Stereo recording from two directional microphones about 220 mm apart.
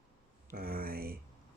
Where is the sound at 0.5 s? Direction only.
45° right (ahead or behind).